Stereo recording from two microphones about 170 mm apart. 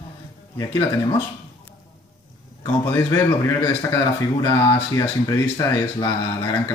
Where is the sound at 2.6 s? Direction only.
15° left (ahead or behind).